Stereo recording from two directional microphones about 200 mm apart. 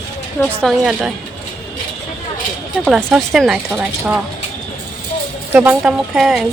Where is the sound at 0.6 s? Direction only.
Centre (ahead or behind).